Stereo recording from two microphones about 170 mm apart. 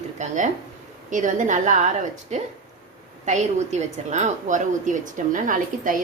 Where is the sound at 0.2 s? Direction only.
45° right (ahead or behind).